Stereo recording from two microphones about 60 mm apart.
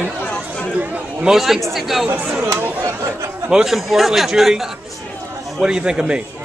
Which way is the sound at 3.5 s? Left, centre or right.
Centre.